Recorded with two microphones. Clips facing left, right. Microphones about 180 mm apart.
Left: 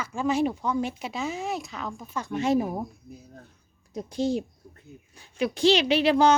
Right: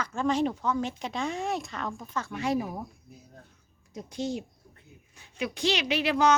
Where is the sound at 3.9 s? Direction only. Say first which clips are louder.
Left 6 dB; 35° left (ahead or behind).